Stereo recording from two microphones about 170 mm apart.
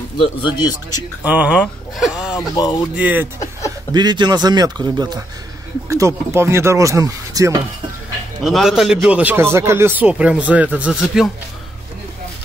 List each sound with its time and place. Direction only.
0.2 s speech: 30° left (ahead or behind)
1.2 s speech: 10° right (ahead or behind)
2.5 s speech: 25° left (ahead or behind)
3.0 s speech: 10° right (ahead or behind)
3.9 s a man's voice: 25° right (ahead or behind)
8.5 s speech: centre (ahead or behind)